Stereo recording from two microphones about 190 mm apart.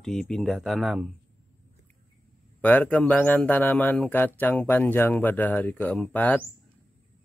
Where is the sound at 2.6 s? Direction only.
10° left (ahead or behind).